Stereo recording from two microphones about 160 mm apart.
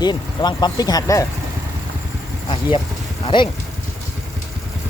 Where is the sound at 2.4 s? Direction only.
35° left (ahead or behind).